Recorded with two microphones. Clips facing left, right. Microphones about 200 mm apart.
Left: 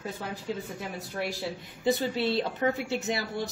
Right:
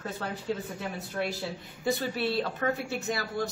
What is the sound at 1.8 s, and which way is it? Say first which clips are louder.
A woman's voice: left 3 dB; 20° left (ahead or behind).